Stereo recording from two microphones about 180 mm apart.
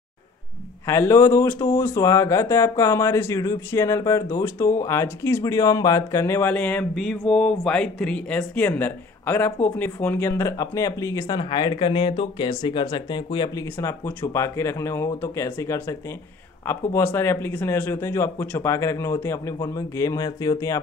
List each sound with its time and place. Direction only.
0.8 s speech: 15° left (ahead or behind)